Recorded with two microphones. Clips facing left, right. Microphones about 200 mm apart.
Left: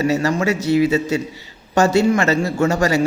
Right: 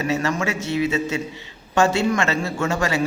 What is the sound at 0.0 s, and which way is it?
A man's voice, 40° left (ahead or behind).